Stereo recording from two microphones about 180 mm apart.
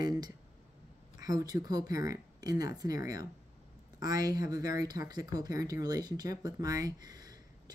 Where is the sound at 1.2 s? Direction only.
20° right (ahead or behind).